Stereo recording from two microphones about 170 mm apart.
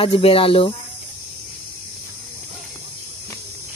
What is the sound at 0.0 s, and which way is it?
Speech, 35° left (ahead or behind).